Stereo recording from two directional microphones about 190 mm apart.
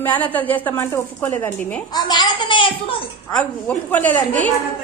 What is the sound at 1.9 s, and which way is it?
A woman's voice, 20° left (ahead or behind).